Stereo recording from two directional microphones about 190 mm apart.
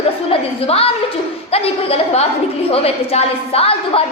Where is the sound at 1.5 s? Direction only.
30° left (ahead or behind).